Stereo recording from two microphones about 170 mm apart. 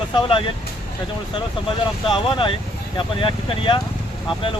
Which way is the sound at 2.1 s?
30° left (ahead or behind).